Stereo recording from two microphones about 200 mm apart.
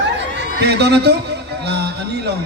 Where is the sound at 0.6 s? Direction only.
55° right (ahead or behind).